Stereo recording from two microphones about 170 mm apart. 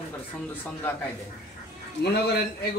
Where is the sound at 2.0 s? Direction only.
75° left (ahead or behind).